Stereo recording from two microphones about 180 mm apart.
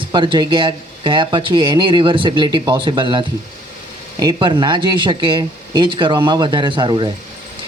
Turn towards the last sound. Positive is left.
turn(degrees=-25)  # may be behind; listen again after turning